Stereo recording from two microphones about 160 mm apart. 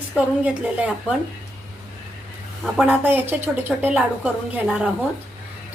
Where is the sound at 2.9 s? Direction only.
15° right (ahead or behind).